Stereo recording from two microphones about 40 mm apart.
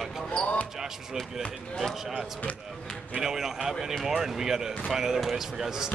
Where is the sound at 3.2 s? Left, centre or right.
Centre.